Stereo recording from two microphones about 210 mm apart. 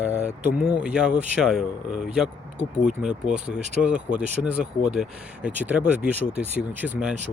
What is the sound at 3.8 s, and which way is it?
Speech, 5° right (ahead or behind).